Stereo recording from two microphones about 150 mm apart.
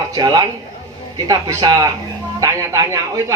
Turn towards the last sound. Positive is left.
turn(degrees=-20)  # may be behind; listen again after turning